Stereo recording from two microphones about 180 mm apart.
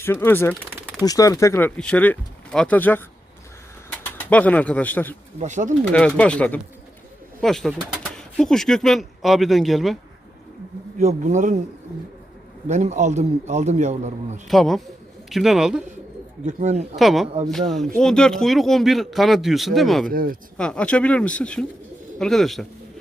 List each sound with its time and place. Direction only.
0.0 s speech: 15° left (ahead or behind)
5.4 s a man's voice: 40° right (ahead or behind)
5.9 s speech: 5° left (ahead or behind)
11.0 s speech: 40° right (ahead or behind)
12.6 s a man's voice: 40° right (ahead or behind)
14.4 s speech: centre (ahead or behind)
16.5 s a man's voice: 40° right (ahead or behind)
16.9 s speech: centre (ahead or behind)
20.1 s speech: 50° right (ahead or behind)
20.6 s speech: 5° left (ahead or behind)